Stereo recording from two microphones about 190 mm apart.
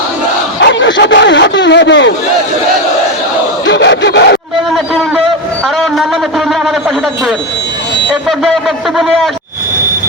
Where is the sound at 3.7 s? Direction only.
65° left (ahead or behind).